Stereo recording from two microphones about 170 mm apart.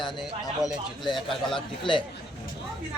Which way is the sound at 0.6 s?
Centre (ahead or behind).